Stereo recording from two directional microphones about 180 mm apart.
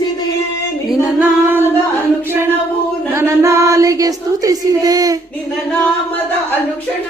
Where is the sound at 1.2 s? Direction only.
10° right (ahead or behind).